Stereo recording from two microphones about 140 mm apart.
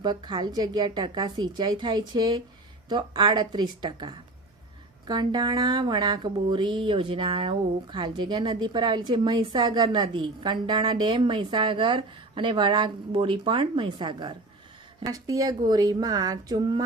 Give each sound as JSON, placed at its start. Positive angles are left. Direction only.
{"t": 0.0, "sound": "a woman's voice", "side_deg": -30}